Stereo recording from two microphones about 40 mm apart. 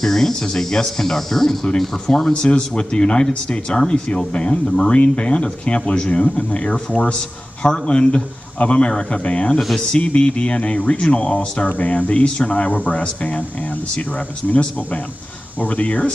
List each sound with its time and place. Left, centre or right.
0.0 s speech: centre
2.3 s speech: left
15.6 s speech: left